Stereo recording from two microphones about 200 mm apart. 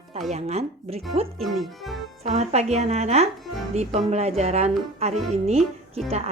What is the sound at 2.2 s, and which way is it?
Speech, 35° right (ahead or behind).